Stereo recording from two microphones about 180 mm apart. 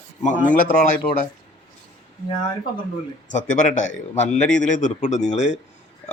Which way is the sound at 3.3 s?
45° left (ahead or behind).